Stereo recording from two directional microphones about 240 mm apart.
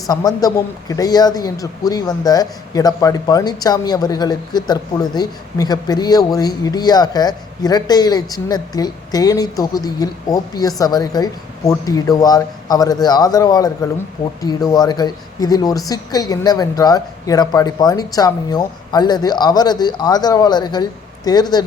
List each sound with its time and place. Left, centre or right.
0.1 s a man's voice: centre